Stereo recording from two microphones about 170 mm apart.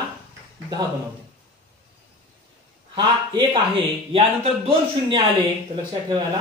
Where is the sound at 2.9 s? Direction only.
25° right (ahead or behind).